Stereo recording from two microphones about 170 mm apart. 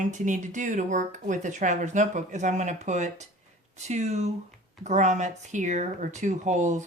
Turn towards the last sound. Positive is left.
turn(degrees=-45)  # may be behind; listen again after turning